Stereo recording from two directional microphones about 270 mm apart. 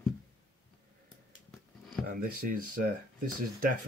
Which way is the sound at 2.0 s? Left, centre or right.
Right.